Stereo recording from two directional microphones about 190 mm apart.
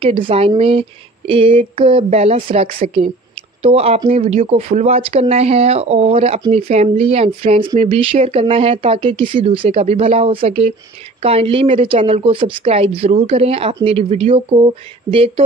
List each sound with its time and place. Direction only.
0.0 s a woman's voice: 30° right (ahead or behind)